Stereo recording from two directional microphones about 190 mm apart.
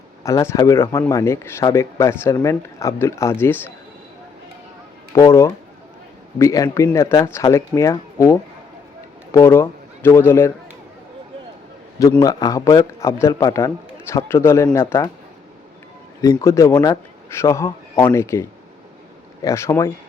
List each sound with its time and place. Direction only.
0.2 s speech: 15° left (ahead or behind)
5.1 s a man's voice: 15° left (ahead or behind)
11.9 s speech: 20° left (ahead or behind)
16.4 s speech: 15° left (ahead or behind)